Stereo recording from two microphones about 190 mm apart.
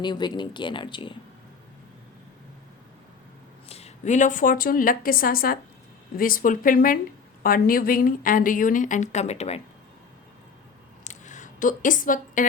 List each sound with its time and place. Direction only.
0.0 s speech: 25° left (ahead or behind)
3.7 s a woman's voice: 35° left (ahead or behind)
11.0 s squish: 40° left (ahead or behind)